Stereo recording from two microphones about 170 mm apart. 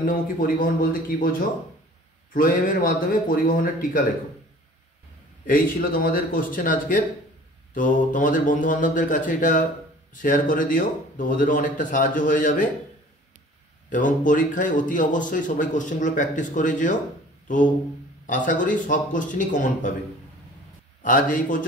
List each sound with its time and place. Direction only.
0.0 s a man's voice: 55° left (ahead or behind)
2.3 s a man's voice: 55° left (ahead or behind)
5.5 s a man's voice: 60° left (ahead or behind)
13.8 s speech: 50° left (ahead or behind)
21.0 s speech: 50° left (ahead or behind)